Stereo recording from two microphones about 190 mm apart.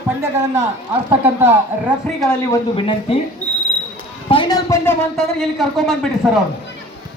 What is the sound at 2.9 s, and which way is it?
Speech, 30° left (ahead or behind).